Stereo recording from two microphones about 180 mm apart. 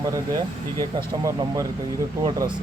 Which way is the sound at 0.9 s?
20° right (ahead or behind).